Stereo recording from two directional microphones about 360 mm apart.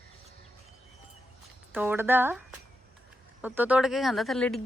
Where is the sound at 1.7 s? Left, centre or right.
Centre.